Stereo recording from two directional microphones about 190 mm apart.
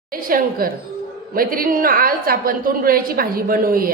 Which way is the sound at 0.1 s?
50° right (ahead or behind).